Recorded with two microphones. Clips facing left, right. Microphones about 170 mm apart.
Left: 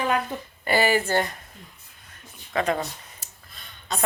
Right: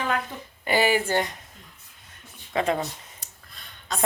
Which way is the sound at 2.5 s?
25° right (ahead or behind).